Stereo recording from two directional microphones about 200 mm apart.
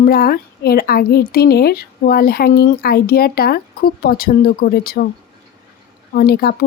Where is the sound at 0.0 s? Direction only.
50° left (ahead or behind).